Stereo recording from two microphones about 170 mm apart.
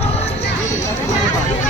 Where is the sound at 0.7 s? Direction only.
45° left (ahead or behind).